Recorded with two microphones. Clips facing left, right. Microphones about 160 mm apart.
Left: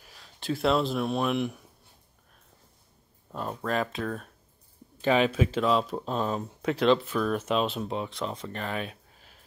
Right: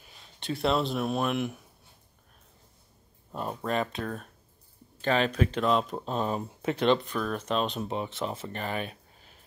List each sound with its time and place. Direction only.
0.1 s speech: centre (ahead or behind)
3.3 s speech: centre (ahead or behind)
5.0 s speech: 10° left (ahead or behind)